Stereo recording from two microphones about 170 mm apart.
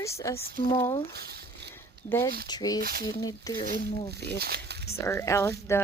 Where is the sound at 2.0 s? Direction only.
15° left (ahead or behind).